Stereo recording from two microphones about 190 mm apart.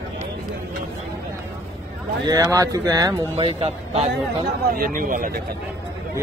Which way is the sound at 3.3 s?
30° right (ahead or behind).